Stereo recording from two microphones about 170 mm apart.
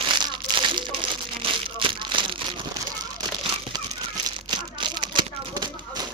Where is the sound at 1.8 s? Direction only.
30° right (ahead or behind).